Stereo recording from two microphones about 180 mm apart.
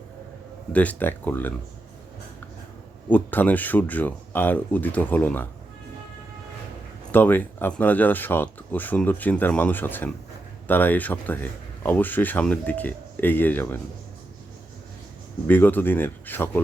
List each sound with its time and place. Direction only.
0.7 s speech: 10° left (ahead or behind)
3.1 s speech: 10° left (ahead or behind)
7.1 s speech: 10° left (ahead or behind)
15.4 s speech: 10° left (ahead or behind)